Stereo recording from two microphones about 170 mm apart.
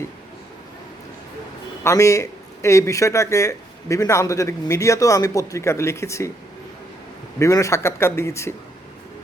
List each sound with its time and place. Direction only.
1.8 s speech: 15° left (ahead or behind)
7.3 s speech: 20° left (ahead or behind)